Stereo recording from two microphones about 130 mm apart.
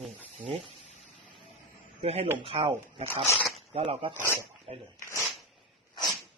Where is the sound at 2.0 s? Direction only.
50° right (ahead or behind).